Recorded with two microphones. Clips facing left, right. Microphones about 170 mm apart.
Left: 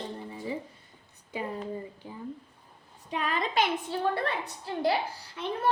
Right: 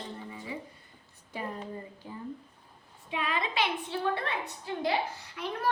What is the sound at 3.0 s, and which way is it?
A woman's voice, 40° left (ahead or behind).